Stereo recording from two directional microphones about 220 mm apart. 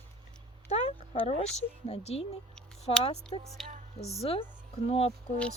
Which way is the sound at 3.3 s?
25° left (ahead or behind).